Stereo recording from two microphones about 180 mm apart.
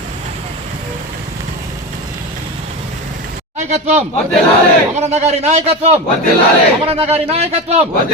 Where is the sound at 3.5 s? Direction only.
40° right (ahead or behind).